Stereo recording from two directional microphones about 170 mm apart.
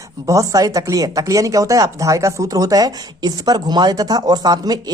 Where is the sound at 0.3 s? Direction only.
20° right (ahead or behind).